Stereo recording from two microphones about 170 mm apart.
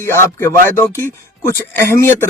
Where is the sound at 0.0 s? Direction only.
15° left (ahead or behind).